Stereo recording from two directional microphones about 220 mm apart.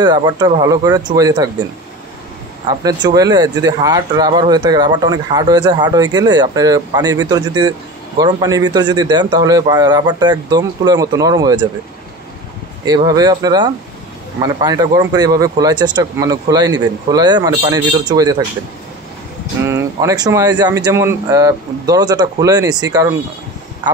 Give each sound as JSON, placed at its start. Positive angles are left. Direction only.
{"t": 0.0, "sound": "speech", "side_deg": -20}
{"t": 2.8, "sound": "speech", "side_deg": -20}
{"t": 12.8, "sound": "speech", "side_deg": -20}
{"t": 19.6, "sound": "speech", "side_deg": -15}